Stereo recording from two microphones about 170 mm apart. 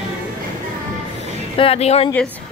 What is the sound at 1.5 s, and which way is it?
Speech, 35° left (ahead or behind).